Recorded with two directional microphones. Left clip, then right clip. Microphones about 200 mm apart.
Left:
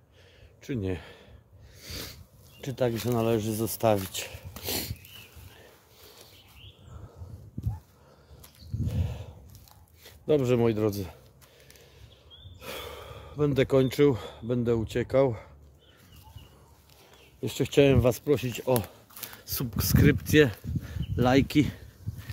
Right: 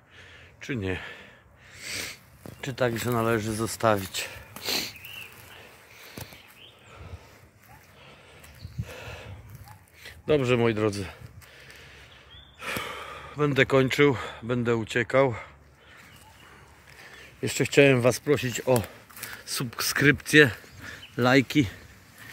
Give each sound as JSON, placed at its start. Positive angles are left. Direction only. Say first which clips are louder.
{"t": 0.6, "sound": "speech", "louder": "right 2 dB", "side_deg": 10}
{"t": 1.8, "sound": "sneeze", "louder": "right 6 dB", "side_deg": 15}
{"t": 2.6, "sound": "speech", "louder": "right 2 dB", "side_deg": 10}
{"t": 4.1, "sound": "a sound", "louder": "right 4 dB", "side_deg": 20}
{"t": 8.8, "sound": "a sound", "louder": "right 1 dB", "side_deg": 10}
{"t": 10.0, "sound": "speech", "louder": "right 1 dB", "side_deg": 10}
{"t": 12.5, "sound": "speech", "louder": "right 7 dB", "side_deg": 0}
{"t": 17.4, "sound": "speech", "louder": "right 3 dB", "side_deg": 0}
{"t": 19.3, "sound": "speech", "louder": "right 4 dB", "side_deg": 10}